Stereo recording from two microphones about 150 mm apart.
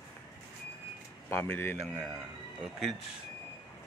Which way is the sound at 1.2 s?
10° left (ahead or behind).